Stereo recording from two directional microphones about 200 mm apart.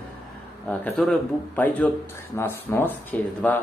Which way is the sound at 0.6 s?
5° left (ahead or behind).